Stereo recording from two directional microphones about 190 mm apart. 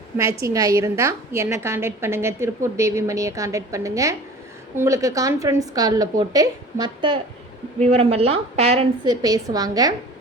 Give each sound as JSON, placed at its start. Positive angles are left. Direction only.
{"t": 0.4, "sound": "a woman's voice", "side_deg": -15}
{"t": 9.2, "sound": "a woman's voice", "side_deg": -20}